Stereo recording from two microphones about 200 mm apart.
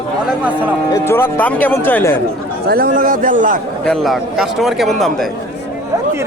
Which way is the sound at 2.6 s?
45° right (ahead or behind).